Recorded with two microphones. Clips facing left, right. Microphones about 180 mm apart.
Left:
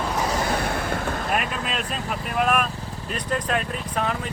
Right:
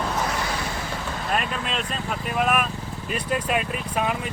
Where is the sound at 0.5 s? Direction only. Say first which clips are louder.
Left 5 dB; 55° left (ahead or behind).